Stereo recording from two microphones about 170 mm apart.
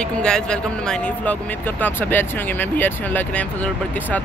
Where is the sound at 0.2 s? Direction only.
5° left (ahead or behind).